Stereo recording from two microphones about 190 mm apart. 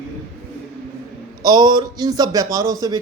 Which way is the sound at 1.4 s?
20° right (ahead or behind).